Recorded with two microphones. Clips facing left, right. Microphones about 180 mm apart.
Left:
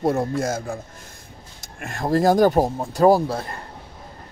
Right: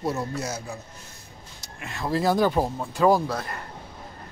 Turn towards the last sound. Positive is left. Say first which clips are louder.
# left 3 dB
turn(degrees=30)  # may be behind; listen again after turning